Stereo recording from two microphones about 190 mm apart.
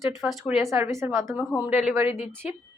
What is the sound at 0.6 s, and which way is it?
A woman's voice, 15° right (ahead or behind).